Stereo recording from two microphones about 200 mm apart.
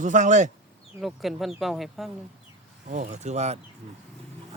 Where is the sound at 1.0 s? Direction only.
Centre (ahead or behind).